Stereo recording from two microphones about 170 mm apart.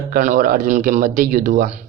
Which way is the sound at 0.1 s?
55° right (ahead or behind).